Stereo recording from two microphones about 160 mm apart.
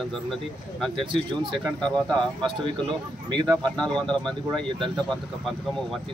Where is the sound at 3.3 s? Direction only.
25° right (ahead or behind).